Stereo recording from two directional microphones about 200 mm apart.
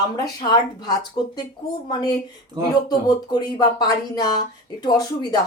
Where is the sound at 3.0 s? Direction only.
20° left (ahead or behind).